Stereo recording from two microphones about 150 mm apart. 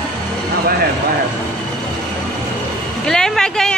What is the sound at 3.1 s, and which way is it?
Speech, 5° left (ahead or behind).